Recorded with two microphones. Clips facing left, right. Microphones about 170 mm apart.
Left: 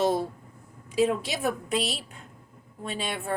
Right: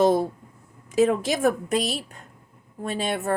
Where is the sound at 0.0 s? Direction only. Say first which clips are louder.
Right 5 dB; 50° right (ahead or behind).